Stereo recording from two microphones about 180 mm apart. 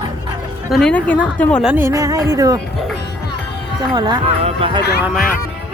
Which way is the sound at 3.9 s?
25° right (ahead or behind).